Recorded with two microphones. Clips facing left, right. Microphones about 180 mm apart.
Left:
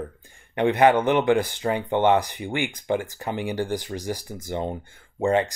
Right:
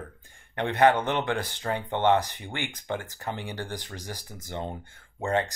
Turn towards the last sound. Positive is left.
turn(degrees=15)  # may be behind; listen again after turning